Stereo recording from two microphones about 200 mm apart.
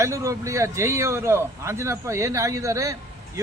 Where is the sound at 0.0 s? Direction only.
15° right (ahead or behind).